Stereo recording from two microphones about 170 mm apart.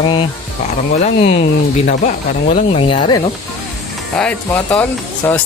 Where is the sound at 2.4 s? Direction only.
40° left (ahead or behind).